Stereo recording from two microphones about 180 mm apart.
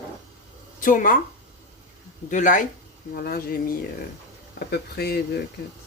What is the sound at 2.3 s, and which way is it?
Speech, 45° left (ahead or behind).